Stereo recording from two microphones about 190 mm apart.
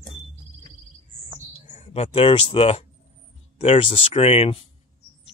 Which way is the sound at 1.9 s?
30° left (ahead or behind).